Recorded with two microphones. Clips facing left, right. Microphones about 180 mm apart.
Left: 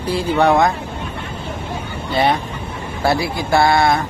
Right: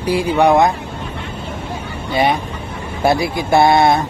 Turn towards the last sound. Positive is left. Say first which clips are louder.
# right 3 dB
turn(degrees=-20)  # may be behind; listen again after turning